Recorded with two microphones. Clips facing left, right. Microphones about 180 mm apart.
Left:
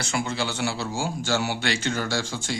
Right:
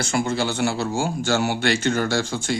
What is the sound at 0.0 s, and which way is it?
Speech, 45° right (ahead or behind).